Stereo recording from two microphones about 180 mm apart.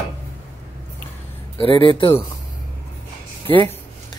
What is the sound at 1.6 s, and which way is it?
Speech, 25° left (ahead or behind).